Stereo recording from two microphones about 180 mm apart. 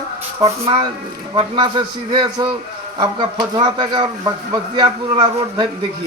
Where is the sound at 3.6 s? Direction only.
25° right (ahead or behind).